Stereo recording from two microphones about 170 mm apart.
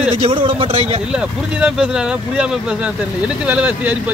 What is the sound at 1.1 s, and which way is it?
Speech, 5° right (ahead or behind).